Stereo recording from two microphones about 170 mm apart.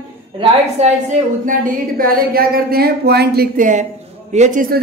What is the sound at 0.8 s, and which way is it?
Speech, 40° right (ahead or behind).